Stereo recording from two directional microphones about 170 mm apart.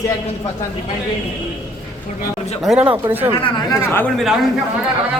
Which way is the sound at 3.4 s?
30° left (ahead or behind).